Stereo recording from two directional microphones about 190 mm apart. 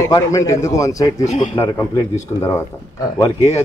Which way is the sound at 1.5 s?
15° left (ahead or behind).